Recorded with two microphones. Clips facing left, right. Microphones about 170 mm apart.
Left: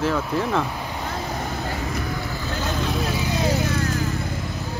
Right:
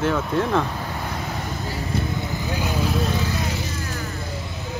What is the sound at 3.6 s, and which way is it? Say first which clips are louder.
Vehicle: left 6 dB; 60° left (ahead or behind).